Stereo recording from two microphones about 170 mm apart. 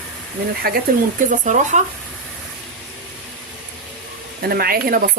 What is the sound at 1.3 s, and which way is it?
Speech, 45° right (ahead or behind).